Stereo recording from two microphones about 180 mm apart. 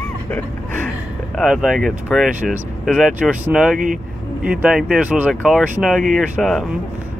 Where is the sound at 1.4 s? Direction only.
5° right (ahead or behind).